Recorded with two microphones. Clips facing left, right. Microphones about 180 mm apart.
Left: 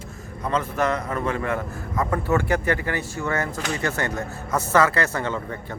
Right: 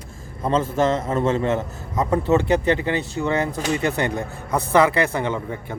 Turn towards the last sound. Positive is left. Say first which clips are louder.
# right 3 dB
turn(degrees=-15)  # may be behind; listen again after turning